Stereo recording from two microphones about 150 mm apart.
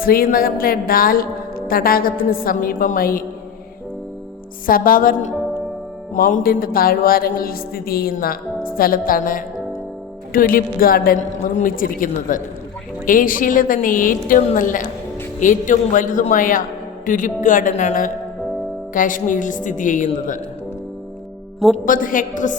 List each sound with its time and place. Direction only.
0.0 s speech: 75° left (ahead or behind)
4.6 s speech: 70° left (ahead or behind)
11.2 s a woman's voice: 60° left (ahead or behind)
21.8 s a woman's voice: 65° left (ahead or behind)